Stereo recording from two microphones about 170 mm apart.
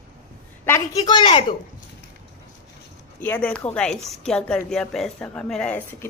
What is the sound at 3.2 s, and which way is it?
A woman's voice, 10° left (ahead or behind).